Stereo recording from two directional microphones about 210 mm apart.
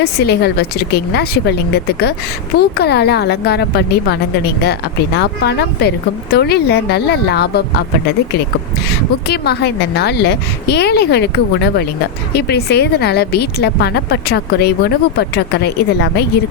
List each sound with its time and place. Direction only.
0.0 s a woman's voice: 50° left (ahead or behind)
8.9 s a woman's voice: 50° left (ahead or behind)